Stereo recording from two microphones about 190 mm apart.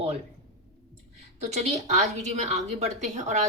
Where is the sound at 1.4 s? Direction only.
35° right (ahead or behind).